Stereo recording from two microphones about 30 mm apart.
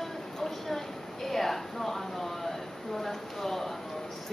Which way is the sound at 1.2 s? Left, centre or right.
Centre.